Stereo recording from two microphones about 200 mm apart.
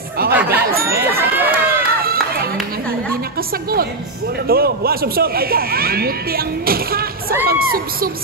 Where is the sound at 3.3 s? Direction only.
50° right (ahead or behind).